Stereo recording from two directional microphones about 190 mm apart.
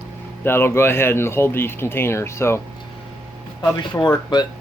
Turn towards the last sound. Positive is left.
turn(degrees=20)  # may be behind; listen again after turning